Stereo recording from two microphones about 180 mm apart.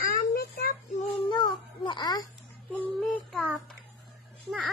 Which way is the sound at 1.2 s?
25° left (ahead or behind).